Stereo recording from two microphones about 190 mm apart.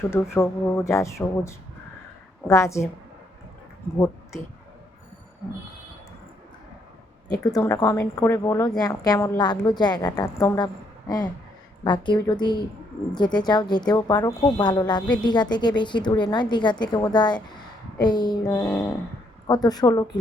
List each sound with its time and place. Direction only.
0.1 s speech: 15° left (ahead or behind)
7.3 s a woman's voice: 15° left (ahead or behind)
11.8 s a woman's voice: 25° left (ahead or behind)